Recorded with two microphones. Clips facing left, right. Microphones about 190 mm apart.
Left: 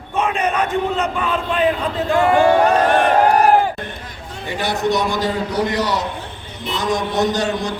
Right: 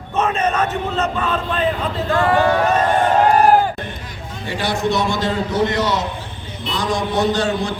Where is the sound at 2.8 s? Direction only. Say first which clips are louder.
Left 1 dB; 75° left (ahead or behind).